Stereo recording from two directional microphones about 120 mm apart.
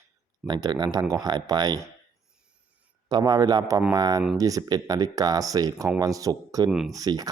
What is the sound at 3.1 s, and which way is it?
Speech, 35° right (ahead or behind).